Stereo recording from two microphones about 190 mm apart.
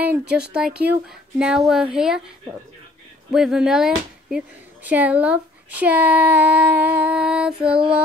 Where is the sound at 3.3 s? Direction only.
5° right (ahead or behind).